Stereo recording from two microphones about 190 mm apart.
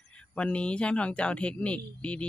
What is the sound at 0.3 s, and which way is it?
Speech, 5° left (ahead or behind).